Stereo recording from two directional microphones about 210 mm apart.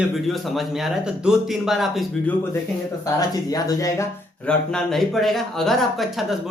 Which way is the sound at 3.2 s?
20° left (ahead or behind).